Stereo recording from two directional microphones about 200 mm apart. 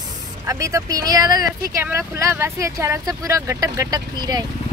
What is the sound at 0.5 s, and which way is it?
Speech, 15° right (ahead or behind).